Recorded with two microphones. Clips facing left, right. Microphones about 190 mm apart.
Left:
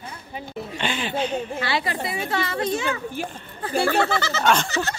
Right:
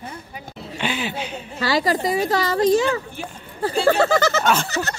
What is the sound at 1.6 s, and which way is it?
Speech, 40° right (ahead or behind).